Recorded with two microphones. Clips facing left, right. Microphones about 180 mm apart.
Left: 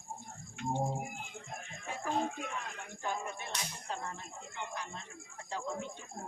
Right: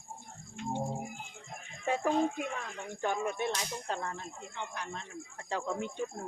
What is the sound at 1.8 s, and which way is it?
Music, 70° right (ahead or behind).